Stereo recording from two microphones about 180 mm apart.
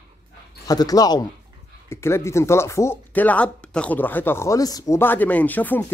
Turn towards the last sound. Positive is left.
turn(degrees=10)  # may be behind; listen again after turning